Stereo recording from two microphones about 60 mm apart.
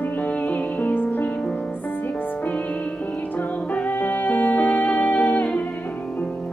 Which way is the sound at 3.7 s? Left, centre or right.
Left.